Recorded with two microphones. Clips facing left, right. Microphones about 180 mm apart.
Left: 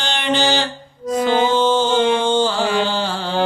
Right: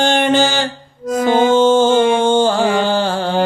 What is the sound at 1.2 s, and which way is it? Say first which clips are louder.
Music: right 5 dB; 50° right (ahead or behind).